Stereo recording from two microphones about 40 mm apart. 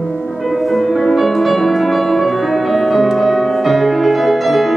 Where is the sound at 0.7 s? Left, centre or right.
Centre.